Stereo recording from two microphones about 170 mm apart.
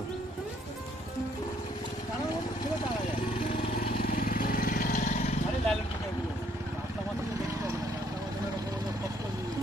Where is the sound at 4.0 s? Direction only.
55° left (ahead or behind).